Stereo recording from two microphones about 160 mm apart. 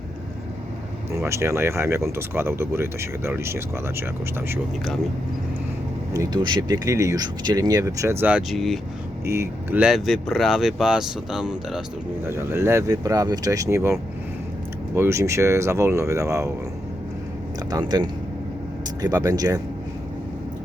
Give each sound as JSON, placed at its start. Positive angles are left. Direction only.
{"t": 1.2, "sound": "speech", "side_deg": -15}
{"t": 6.1, "sound": "speech", "side_deg": -25}
{"t": 9.2, "sound": "speech", "side_deg": -15}
{"t": 12.3, "sound": "speech", "side_deg": -15}
{"t": 14.9, "sound": "speech", "side_deg": -15}
{"t": 17.7, "sound": "speech", "side_deg": -25}